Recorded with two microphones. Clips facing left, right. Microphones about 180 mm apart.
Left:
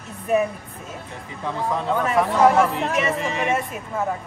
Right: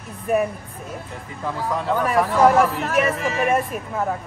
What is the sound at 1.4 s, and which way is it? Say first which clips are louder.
Speech: even; 5° right (ahead or behind).